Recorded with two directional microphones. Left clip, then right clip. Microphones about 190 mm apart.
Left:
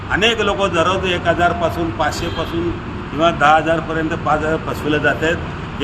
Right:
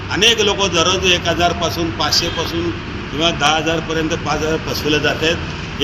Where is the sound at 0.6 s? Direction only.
30° left (ahead or behind).